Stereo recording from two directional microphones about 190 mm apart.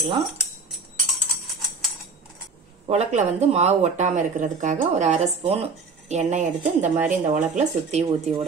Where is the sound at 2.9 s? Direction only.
35° right (ahead or behind).